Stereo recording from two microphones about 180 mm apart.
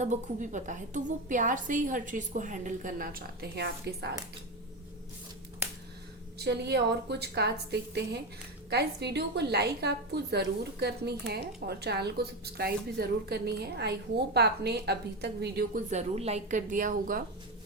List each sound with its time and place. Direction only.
0.0 s a woman's voice: 45° right (ahead or behind); by 4.1 s 65° right (ahead or behind)
6.4 s a woman's voice: 65° right (ahead or behind)
15.9 s a woman's voice: 40° right (ahead or behind)